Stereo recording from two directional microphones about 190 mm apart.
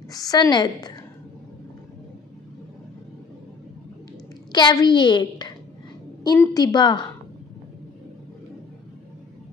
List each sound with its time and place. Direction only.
0.1 s a woman's voice: 20° left (ahead or behind)
4.5 s a woman's voice: 20° left (ahead or behind)